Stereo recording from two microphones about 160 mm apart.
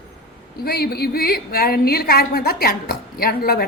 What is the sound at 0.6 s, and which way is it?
A woman's voice, 75° left (ahead or behind).